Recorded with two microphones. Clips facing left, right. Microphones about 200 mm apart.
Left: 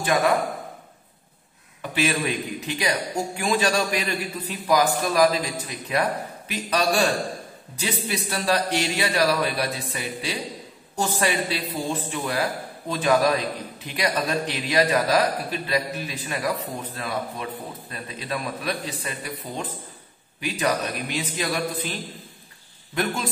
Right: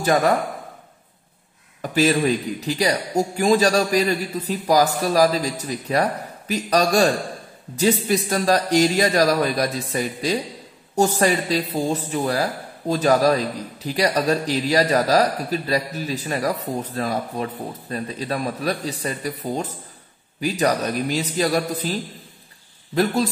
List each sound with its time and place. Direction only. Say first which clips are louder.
0.0 s speech: right 3 dB; 40° right (ahead or behind)
1.8 s a man's voice: right 6 dB; 40° right (ahead or behind)
22.9 s a man's voice: right 6 dB; 40° right (ahead or behind)